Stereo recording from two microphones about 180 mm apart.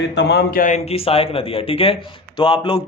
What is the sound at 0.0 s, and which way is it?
Speech, 75° left (ahead or behind).